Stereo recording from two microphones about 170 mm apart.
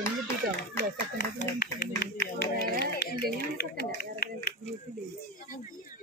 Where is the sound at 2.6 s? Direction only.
75° left (ahead or behind).